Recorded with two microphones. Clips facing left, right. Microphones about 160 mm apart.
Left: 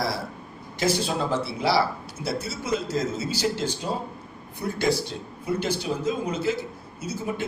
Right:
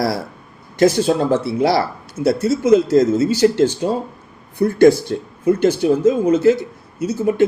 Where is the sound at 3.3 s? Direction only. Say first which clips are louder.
Right 12 dB; 60° right (ahead or behind).